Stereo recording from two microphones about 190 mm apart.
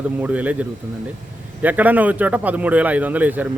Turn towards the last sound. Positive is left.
turn(degrees=-10)  # may be behind; listen again after turning